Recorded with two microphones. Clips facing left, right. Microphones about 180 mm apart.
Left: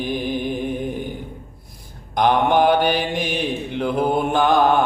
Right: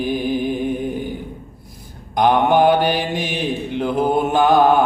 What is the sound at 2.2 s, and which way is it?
Mantra, centre (ahead or behind).